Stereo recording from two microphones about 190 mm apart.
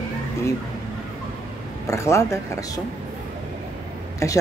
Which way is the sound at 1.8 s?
15° left (ahead or behind).